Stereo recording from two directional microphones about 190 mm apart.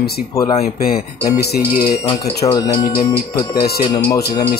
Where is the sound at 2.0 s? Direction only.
25° left (ahead or behind).